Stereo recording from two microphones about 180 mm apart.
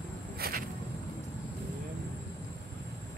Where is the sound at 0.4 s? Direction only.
55° right (ahead or behind).